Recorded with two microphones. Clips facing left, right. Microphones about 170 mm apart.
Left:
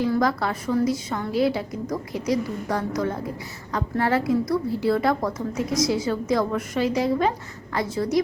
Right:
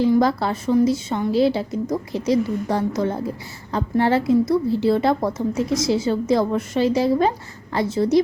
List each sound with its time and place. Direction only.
0.2 s a woman's voice: 30° right (ahead or behind)